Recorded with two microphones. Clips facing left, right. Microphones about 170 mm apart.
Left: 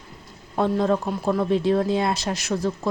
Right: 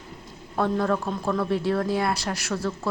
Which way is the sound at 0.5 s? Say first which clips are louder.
Left 3 dB; 20° left (ahead or behind).